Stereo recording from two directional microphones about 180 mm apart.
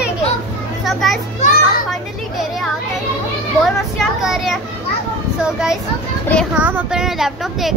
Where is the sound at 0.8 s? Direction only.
Centre (ahead or behind).